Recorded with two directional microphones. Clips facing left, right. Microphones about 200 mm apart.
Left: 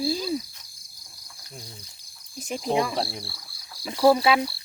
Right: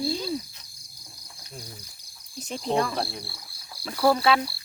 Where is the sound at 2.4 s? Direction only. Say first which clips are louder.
Left 1 dB; 10° left (ahead or behind).